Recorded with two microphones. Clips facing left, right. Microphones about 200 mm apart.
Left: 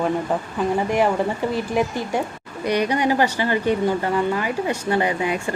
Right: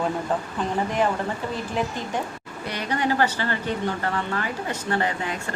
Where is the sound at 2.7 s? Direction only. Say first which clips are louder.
Left 6 dB; 15° left (ahead or behind).